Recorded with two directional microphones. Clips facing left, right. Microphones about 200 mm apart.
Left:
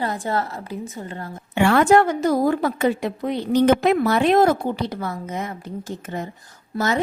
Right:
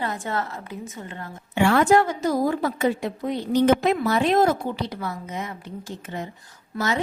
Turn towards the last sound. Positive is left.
turn(degrees=45)  # may be behind; listen again after turning